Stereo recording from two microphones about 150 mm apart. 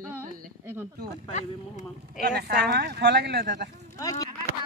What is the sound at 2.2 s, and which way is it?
Speech, 90° right.